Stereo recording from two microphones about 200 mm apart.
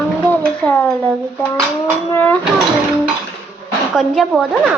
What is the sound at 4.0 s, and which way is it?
Speech, centre (ahead or behind).